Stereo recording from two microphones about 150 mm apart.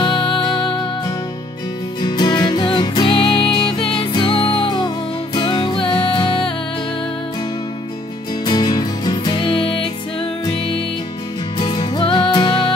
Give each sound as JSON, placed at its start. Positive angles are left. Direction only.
{"t": 0.0, "sound": "music", "side_deg": 35}
{"t": 2.0, "sound": "music", "side_deg": 30}
{"t": 8.5, "sound": "music", "side_deg": 25}
{"t": 11.5, "sound": "music", "side_deg": 30}